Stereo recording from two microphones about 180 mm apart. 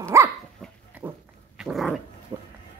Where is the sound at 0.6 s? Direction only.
5° left (ahead or behind).